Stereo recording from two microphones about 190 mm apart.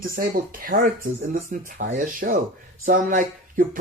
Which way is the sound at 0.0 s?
50° right (ahead or behind).